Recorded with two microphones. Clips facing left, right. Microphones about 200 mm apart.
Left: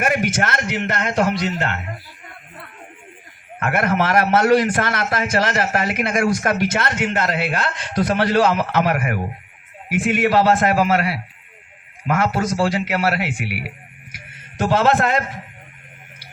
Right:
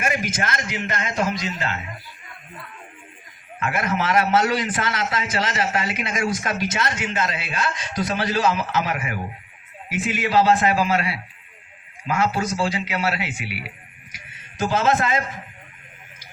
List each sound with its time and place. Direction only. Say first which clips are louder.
0.0 s a man's voice: left 5 dB; 65° left (ahead or behind)
3.6 s a man's voice: left 4 dB; 60° left (ahead or behind)
14.1 s a sound: left 4 dB; 60° left (ahead or behind)